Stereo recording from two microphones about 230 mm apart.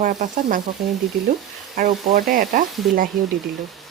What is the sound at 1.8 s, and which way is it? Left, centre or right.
Speech, right.